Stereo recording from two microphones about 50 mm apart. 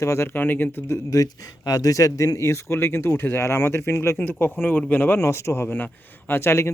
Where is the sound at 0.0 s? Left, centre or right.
Left.